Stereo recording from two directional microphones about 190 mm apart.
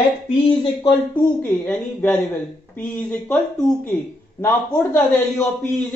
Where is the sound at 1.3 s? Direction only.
5° left (ahead or behind).